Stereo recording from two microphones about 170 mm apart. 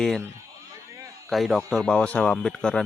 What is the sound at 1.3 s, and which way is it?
Speech, centre (ahead or behind).